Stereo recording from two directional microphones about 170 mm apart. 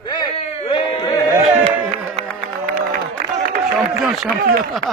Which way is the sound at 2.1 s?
45° right (ahead or behind).